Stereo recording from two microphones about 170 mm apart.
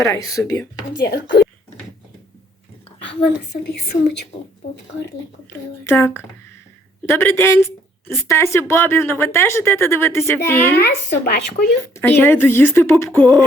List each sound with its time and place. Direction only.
0.2 s speech: 20° left (ahead or behind)
1.0 s speech: 70° left (ahead or behind)
3.0 s speech: 85° left
5.8 s a woman's voice: 15° left (ahead or behind)
11.2 s speech: 60° left (ahead or behind)
11.9 s a woman's voice: 15° left (ahead or behind)
13.1 s a sound: 5° left (ahead or behind)